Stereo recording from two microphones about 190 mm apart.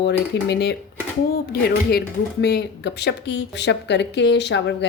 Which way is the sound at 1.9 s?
60° left (ahead or behind).